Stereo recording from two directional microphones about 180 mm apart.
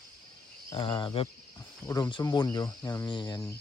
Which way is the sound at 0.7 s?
30° left (ahead or behind).